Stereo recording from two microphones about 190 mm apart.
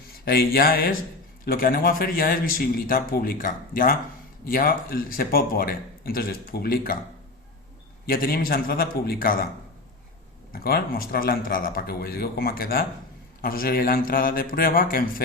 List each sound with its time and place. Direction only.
0.3 s speech: 50° left (ahead or behind)
8.0 s speech: 50° left (ahead or behind)
10.5 s speech: 55° left (ahead or behind)